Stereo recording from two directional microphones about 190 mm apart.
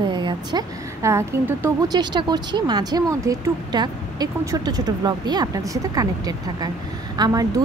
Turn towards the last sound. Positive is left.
turn(degrees=-20)  # may be behind; listen again after turning